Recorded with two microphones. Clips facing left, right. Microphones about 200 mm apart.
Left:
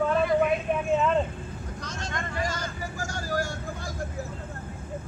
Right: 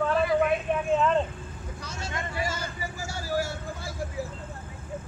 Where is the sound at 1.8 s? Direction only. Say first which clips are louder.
Even; 10° right (ahead or behind).